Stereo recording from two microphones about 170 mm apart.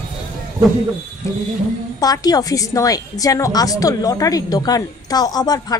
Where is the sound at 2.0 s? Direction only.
20° left (ahead or behind).